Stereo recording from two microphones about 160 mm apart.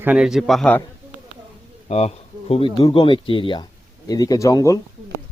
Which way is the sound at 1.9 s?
40° left (ahead or behind).